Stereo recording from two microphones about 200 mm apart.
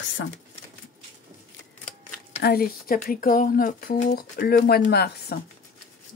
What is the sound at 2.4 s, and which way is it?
Speech, 50° left (ahead or behind).